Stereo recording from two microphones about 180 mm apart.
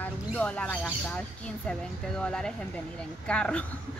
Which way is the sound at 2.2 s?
5° left (ahead or behind).